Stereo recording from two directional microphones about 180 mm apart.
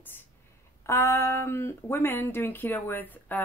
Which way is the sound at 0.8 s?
15° left (ahead or behind).